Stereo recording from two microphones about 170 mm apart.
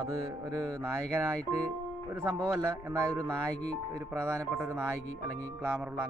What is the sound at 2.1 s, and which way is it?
Speech, 15° right (ahead or behind).